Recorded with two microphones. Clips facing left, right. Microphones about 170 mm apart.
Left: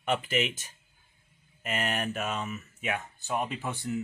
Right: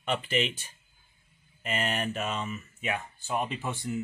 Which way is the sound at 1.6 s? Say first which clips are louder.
Right 1 dB; 5° left (ahead or behind).